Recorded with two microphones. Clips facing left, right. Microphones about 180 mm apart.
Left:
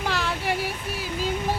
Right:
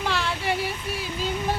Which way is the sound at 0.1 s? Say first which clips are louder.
Even; 10° left (ahead or behind).